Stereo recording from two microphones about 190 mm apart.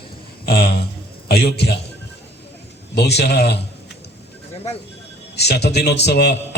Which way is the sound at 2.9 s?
60° left (ahead or behind).